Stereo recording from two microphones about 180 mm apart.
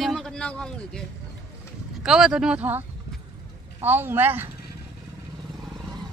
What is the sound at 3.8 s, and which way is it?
Speech, 10° right (ahead or behind).